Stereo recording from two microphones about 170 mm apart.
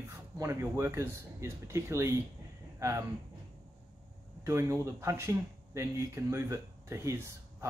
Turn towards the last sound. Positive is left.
turn(degrees=-15)  # may be behind; listen again after turning